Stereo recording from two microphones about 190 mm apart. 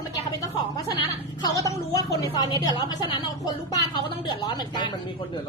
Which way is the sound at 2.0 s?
20° left (ahead or behind).